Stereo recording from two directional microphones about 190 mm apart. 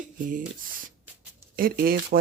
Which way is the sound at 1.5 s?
50° right (ahead or behind).